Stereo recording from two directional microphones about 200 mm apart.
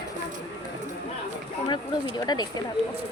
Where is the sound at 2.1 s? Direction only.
20° left (ahead or behind).